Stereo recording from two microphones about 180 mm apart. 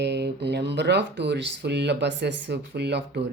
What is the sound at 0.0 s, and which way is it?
Speech, 70° right (ahead or behind).